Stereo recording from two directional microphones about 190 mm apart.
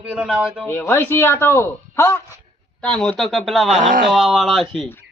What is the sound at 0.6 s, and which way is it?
A man's voice, 10° left (ahead or behind).